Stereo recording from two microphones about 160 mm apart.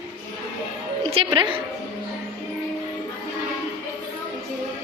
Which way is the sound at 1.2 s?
30° right (ahead or behind).